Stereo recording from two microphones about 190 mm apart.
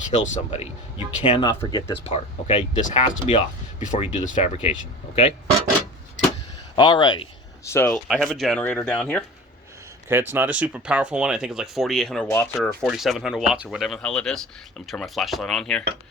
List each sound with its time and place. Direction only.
0.1 s speech: 35° left (ahead or behind)
6.7 s speech: 25° left (ahead or behind)
7.7 s speech: 15° left (ahead or behind)
8.0 s speech: centre (ahead or behind)
10.1 s speech: 10° right (ahead or behind)